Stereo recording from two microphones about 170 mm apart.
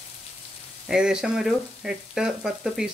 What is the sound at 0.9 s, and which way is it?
Speech, 5° right (ahead or behind).